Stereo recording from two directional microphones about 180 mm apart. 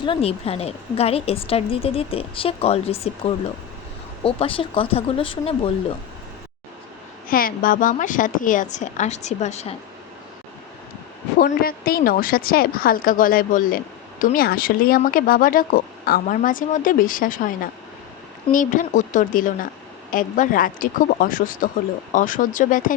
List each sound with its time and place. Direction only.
0.0 s a woman's voice: 30° left (ahead or behind)
7.3 s a woman's voice: 50° left (ahead or behind)
11.3 s a woman's voice: 55° left (ahead or behind)
18.5 s a woman's voice: 45° left (ahead or behind)